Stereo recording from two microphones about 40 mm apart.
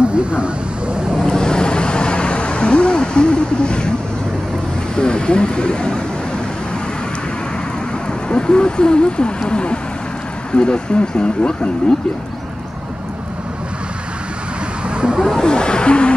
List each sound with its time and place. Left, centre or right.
0.0 s vehicle: right
1.2 s vehicle: centre
4.9 s vehicle: left
8.3 s speech: left
14.9 s a sound: right
15.4 s a sound: left